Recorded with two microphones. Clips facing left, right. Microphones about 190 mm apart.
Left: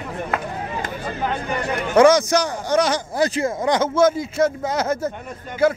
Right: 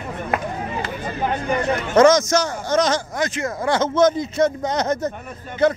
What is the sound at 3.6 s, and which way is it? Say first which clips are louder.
Speech: right 1 dB; 10° left (ahead or behind).